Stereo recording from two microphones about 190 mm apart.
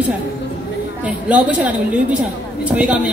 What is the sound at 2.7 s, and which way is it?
Speech, 5° right (ahead or behind).